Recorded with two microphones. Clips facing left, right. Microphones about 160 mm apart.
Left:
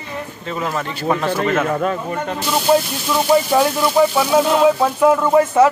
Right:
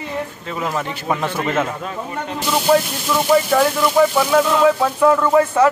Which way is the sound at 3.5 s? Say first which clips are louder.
Even; 10° left (ahead or behind).